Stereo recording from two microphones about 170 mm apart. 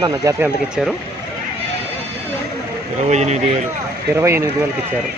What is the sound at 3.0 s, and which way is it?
Speech, 40° right (ahead or behind).